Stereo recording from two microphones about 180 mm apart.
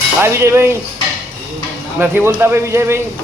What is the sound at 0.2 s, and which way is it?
Speech, 15° right (ahead or behind).